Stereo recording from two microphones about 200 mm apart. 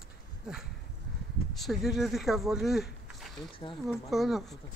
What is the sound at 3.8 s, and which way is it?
Speech, centre (ahead or behind).